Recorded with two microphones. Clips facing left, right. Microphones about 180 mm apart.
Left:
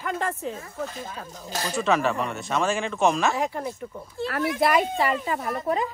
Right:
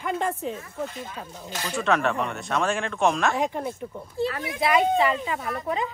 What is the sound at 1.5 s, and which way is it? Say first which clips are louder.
Speech: left 4 dB; 40° left (ahead or behind).